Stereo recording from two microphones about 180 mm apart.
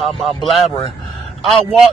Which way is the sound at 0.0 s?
Centre (ahead or behind).